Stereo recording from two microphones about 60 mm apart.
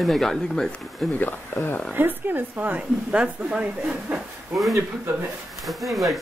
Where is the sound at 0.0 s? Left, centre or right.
Centre.